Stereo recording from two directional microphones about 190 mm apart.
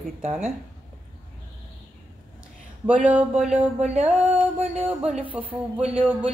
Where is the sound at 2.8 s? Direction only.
5° right (ahead or behind).